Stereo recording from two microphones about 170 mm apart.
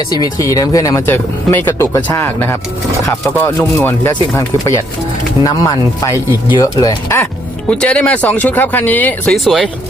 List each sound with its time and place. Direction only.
0.1 s speech: 20° left (ahead or behind)
7.7 s speech: 5° left (ahead or behind)